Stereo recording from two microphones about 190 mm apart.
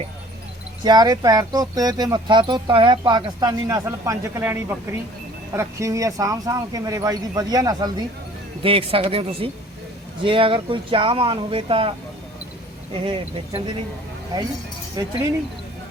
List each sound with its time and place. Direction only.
0.9 s speech: 20° right (ahead or behind)
15.0 s speech: 20° right (ahead or behind)